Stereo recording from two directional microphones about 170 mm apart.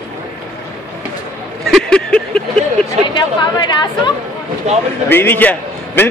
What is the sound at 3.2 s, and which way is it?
Chatter, 25° left (ahead or behind).